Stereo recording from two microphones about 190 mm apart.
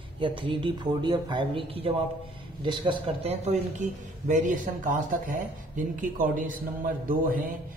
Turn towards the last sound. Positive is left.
turn(degrees=-45)  # may be behind; listen again after turning